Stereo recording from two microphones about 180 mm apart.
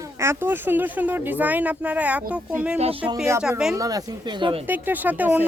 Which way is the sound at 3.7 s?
20° right (ahead or behind).